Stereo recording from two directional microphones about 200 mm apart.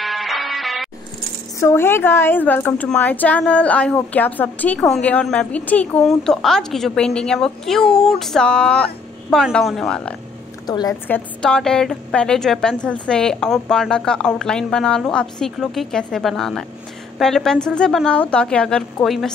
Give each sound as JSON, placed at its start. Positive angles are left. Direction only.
{"t": 0.0, "sound": "music", "side_deg": 0}
{"t": 1.6, "sound": "a woman's voice", "side_deg": 15}
{"t": 10.7, "sound": "a woman's voice", "side_deg": 20}
{"t": 11.1, "sound": "a woman's voice", "side_deg": 5}